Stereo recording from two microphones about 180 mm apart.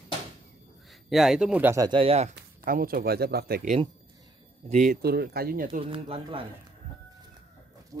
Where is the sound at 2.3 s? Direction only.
55° right (ahead or behind).